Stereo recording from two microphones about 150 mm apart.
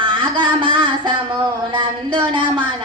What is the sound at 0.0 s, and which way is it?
Music, 35° right (ahead or behind).